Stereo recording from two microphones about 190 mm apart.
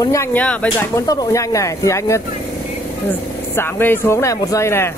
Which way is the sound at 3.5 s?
10° left (ahead or behind).